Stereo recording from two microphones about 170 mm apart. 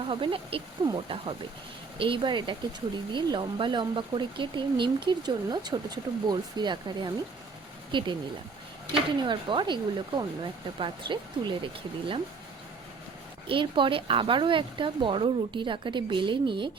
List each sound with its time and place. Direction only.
0.0 s speech: 30° right (ahead or behind)
9.2 s speech: 30° right (ahead or behind)
13.5 s speech: 30° right (ahead or behind)